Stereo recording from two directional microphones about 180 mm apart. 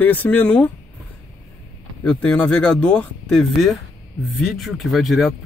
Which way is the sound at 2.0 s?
5° left (ahead or behind).